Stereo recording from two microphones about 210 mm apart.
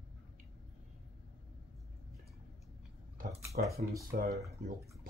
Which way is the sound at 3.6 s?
40° right (ahead or behind).